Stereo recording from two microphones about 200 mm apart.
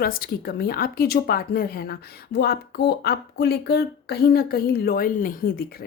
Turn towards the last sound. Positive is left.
turn(degrees=50)  # may be behind; listen again after turning